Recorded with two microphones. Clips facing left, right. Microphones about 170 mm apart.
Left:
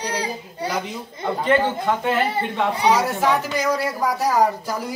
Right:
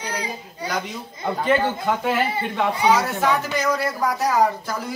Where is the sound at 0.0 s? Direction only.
35° left (ahead or behind).